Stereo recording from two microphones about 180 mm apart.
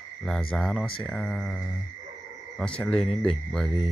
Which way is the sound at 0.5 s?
Centre (ahead or behind).